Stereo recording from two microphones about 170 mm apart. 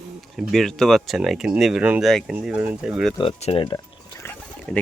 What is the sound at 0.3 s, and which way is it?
Speech, centre (ahead or behind).